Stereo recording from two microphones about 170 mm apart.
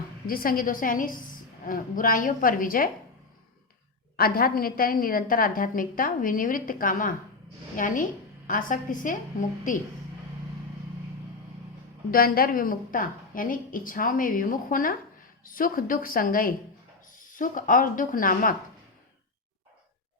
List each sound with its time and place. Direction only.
0.3 s a woman's voice: 55° left (ahead or behind)
4.2 s a woman's voice: 60° left (ahead or behind)
12.1 s a woman's voice: 60° left (ahead or behind)